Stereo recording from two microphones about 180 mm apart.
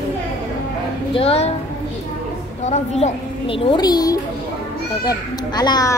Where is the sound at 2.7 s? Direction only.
40° left (ahead or behind).